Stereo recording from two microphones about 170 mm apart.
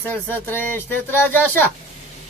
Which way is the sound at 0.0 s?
10° left (ahead or behind).